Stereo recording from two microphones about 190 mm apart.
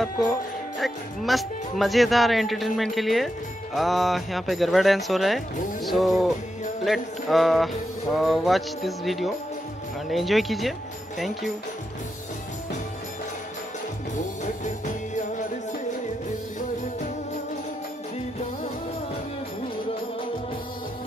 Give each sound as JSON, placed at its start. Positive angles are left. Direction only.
{"t": 0.0, "sound": "speech", "side_deg": 0}
{"t": 14.1, "sound": "music", "side_deg": 40}